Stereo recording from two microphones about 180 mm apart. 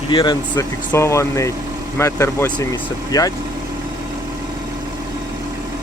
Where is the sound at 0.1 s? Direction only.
25° left (ahead or behind).